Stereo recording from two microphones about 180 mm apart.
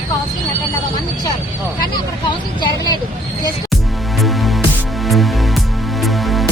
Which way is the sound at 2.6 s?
20° left (ahead or behind).